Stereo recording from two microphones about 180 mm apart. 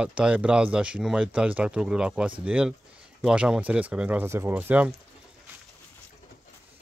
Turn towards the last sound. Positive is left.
turn(degrees=-10)  # may be behind; listen again after turning